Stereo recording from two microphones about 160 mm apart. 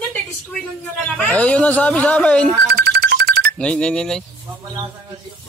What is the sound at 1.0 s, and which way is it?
Speech, 5° left (ahead or behind).